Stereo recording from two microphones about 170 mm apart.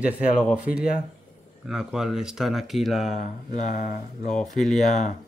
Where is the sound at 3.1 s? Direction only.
45° left (ahead or behind).